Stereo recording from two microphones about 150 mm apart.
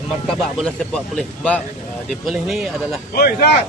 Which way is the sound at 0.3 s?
5° left (ahead or behind).